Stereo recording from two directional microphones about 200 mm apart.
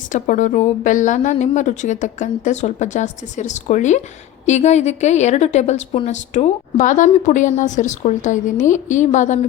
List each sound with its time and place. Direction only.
0.1 s a woman's voice: 40° left (ahead or behind)